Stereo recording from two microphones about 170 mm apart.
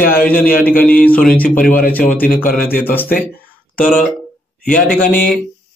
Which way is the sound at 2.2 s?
55° left (ahead or behind).